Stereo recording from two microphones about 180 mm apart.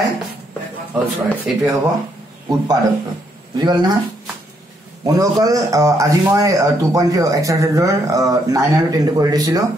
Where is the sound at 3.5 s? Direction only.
25° right (ahead or behind).